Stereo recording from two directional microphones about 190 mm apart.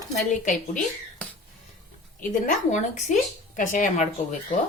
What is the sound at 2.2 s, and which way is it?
A woman's voice, 40° left (ahead or behind).